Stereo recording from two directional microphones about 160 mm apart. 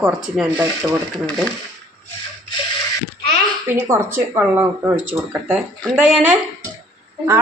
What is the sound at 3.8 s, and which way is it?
Speech, 15° right (ahead or behind).